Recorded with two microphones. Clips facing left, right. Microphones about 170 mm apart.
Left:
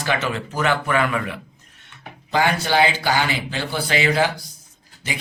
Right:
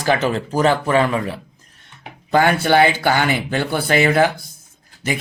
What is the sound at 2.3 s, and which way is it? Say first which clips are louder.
Speech: right 5 dB; 55° right (ahead or behind).